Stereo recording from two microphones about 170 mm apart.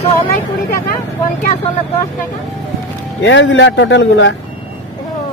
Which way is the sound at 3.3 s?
90° left.